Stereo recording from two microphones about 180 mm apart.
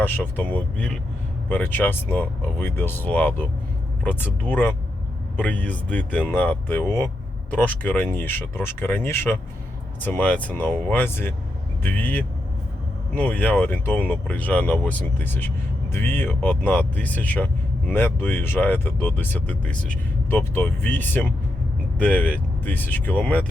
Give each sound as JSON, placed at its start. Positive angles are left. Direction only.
{"t": 0.0, "sound": "speech", "side_deg": 10}